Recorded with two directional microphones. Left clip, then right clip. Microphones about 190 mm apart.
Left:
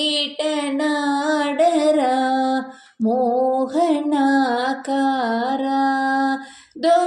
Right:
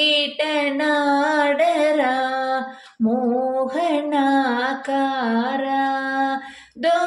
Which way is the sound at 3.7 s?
45° left (ahead or behind).